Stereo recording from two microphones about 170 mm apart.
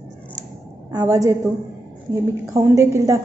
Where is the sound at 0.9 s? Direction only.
20° right (ahead or behind).